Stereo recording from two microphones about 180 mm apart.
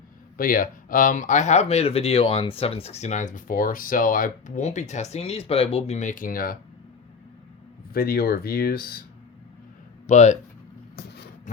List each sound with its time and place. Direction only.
0.3 s speech: 55° left (ahead or behind)
7.9 s speech: 55° left (ahead or behind)
10.1 s speech: 40° left (ahead or behind)